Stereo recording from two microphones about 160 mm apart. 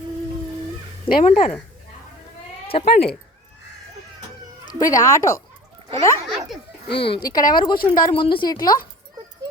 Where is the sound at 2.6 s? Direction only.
35° left (ahead or behind).